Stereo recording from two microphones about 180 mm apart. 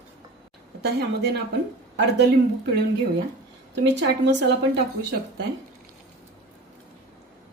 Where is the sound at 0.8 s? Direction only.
65° right (ahead or behind).